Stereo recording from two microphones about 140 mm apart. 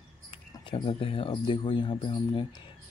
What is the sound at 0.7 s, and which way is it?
Speech, 40° left (ahead or behind).